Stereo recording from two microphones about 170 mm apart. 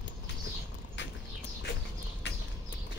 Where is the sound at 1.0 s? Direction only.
90° left.